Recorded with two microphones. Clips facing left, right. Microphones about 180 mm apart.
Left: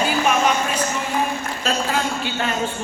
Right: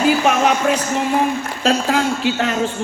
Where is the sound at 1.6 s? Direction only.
90° right.